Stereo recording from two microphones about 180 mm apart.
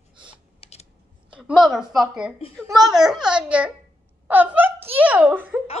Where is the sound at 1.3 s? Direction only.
5° right (ahead or behind).